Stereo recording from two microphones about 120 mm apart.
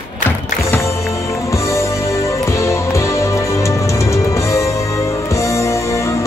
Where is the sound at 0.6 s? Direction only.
25° left (ahead or behind).